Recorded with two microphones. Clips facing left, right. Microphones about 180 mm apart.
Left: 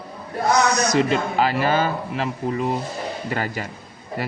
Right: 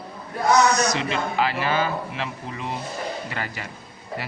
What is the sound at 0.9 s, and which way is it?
A man's voice, 45° left (ahead or behind).